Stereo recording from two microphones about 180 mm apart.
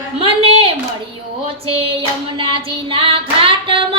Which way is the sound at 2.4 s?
30° right (ahead or behind).